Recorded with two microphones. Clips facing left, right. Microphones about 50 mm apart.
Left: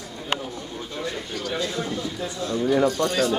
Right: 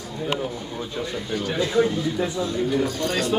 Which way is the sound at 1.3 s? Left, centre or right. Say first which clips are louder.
Right 8 dB; centre.